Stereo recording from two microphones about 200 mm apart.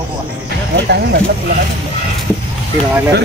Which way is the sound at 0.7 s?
55° right (ahead or behind).